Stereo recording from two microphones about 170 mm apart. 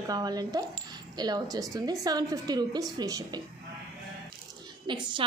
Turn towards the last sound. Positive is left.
turn(degrees=-30)  # may be behind; listen again after turning